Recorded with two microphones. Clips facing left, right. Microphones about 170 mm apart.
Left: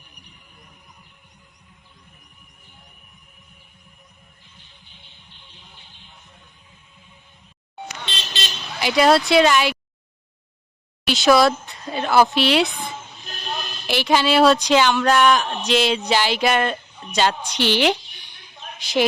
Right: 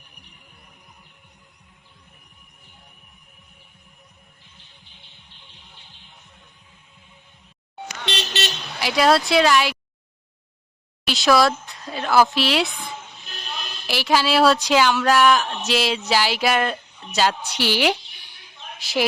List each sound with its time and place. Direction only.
8.0 s vehicle: 70° right (ahead or behind)
8.8 s speech: centre (ahead or behind)
11.0 s speech: centre (ahead or behind)
13.8 s a woman's voice: centre (ahead or behind)